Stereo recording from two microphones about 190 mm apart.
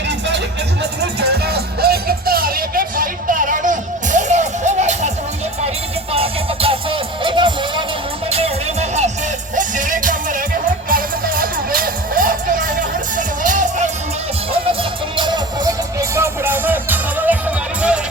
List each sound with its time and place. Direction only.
0.8 s music: 60° right (ahead or behind); by 5.1 s 40° right (ahead or behind)
6.1 s music: 30° right (ahead or behind)
14.5 s music: 25° right (ahead or behind); by 17.3 s 10° right (ahead or behind)